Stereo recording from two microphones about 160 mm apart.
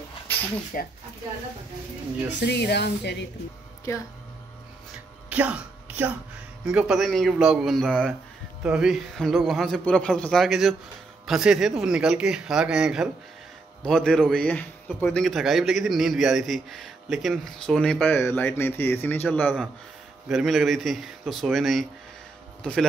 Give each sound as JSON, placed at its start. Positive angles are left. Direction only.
{"t": 0.7, "sound": "speech", "side_deg": 60}
{"t": 2.4, "sound": "speech", "side_deg": 90}
{"t": 5.3, "sound": "a woman's voice", "side_deg": -10}